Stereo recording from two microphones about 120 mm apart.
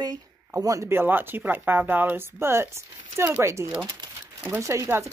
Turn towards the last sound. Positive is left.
turn(degrees=-25)  # may be behind; listen again after turning